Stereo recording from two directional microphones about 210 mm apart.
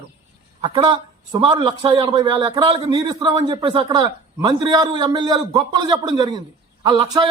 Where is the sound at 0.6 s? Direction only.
20° right (ahead or behind).